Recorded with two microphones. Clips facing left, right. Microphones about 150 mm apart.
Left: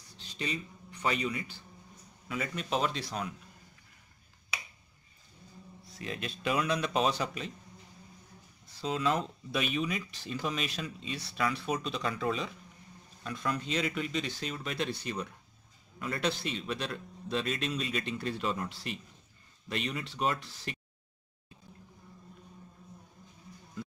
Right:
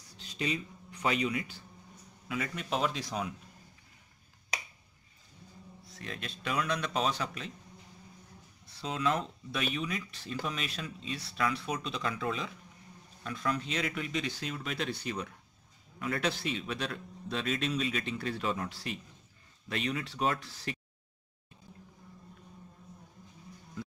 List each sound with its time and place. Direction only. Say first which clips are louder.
1.0 s a man's voice: right 1 dB; 5° right (ahead or behind)
3.0 s a man's voice: right 1 dB; 15° right (ahead or behind)
5.9 s a man's voice: left 4 dB; 5° left (ahead or behind)
8.8 s a man's voice: left 1 dB; centre (ahead or behind)